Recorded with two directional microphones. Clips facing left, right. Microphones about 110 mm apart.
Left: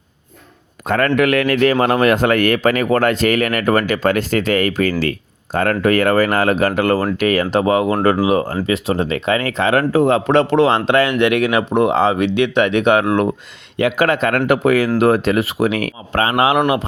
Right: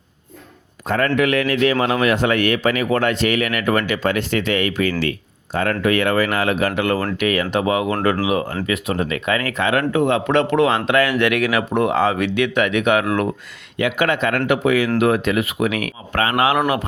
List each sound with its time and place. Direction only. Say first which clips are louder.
0.9 s a man's voice: left 3 dB; 60° left (ahead or behind); by 13.3 s 25° left (ahead or behind)
13.7 s a man's voice: left 3 dB; 35° left (ahead or behind)